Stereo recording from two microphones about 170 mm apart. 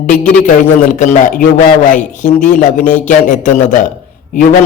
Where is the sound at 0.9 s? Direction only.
50° left (ahead or behind).